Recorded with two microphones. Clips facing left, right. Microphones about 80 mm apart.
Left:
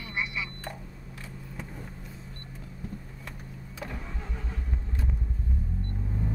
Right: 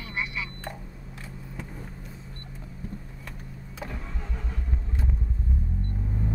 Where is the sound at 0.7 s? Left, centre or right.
Right.